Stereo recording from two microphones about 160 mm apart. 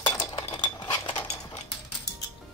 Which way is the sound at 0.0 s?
30° left (ahead or behind).